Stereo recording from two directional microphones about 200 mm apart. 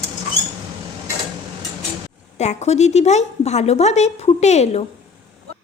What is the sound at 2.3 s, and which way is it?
A woman's voice, 35° left (ahead or behind).